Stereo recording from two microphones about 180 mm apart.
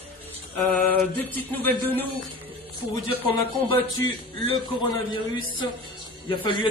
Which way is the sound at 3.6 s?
30° left (ahead or behind).